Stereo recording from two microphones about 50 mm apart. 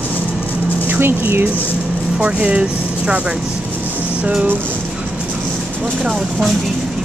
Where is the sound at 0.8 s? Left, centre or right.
Right.